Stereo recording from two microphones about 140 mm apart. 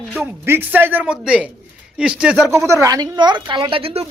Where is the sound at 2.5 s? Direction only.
20° right (ahead or behind); by 4.0 s 45° right (ahead or behind).